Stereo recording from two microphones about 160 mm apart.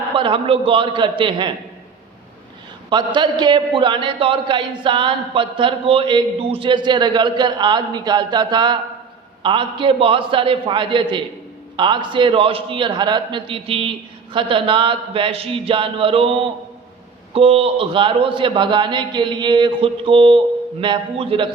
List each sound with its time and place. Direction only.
0.2 s a man's voice: 35° right (ahead or behind)
2.9 s a man's voice: 30° right (ahead or behind)